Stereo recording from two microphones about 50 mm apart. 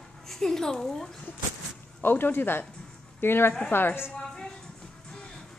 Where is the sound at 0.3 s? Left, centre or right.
Centre.